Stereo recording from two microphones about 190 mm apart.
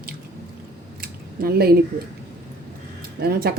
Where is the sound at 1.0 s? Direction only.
50° right (ahead or behind).